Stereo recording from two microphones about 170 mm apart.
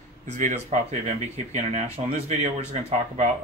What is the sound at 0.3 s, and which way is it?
Speech, 45° right (ahead or behind).